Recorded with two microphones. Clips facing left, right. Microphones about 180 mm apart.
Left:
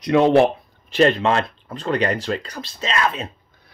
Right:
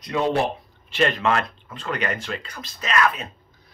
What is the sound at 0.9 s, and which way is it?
Speech, 35° left (ahead or behind).